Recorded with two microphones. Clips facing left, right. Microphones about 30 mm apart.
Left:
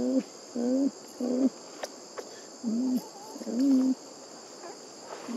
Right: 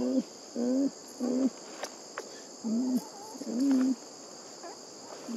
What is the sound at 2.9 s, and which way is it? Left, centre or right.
Bird, centre.